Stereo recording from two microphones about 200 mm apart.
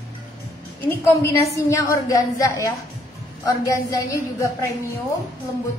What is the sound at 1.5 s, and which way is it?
A woman's voice, 15° left (ahead or behind).